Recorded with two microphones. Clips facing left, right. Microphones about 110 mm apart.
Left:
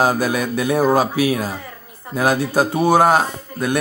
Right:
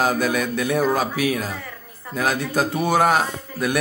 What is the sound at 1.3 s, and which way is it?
Speech, 30° left (ahead or behind).